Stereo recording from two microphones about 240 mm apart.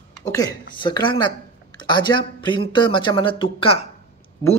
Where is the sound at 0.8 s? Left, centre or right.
Centre.